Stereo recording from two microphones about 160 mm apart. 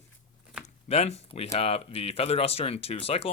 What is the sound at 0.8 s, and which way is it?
Speech, 40° left (ahead or behind).